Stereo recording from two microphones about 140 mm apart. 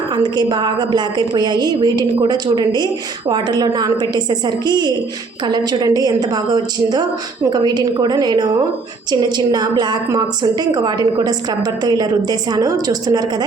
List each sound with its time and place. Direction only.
0.1 s a woman's voice: 30° right (ahead or behind)